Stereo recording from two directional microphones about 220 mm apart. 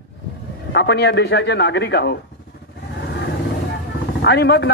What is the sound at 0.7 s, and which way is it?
A man's voice, 50° left (ahead or behind).